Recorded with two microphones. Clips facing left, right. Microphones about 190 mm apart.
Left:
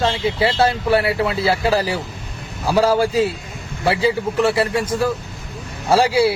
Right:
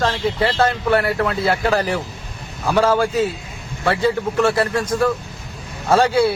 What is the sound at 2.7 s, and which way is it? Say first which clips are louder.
Speech: left 1 dB; 30° left (ahead or behind).